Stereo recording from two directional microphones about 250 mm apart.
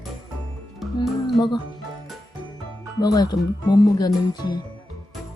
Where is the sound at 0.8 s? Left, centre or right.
Centre.